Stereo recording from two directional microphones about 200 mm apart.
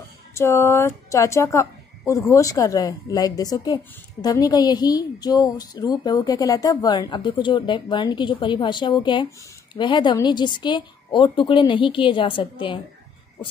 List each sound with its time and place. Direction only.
0.3 s a woman's voice: 15° left (ahead or behind)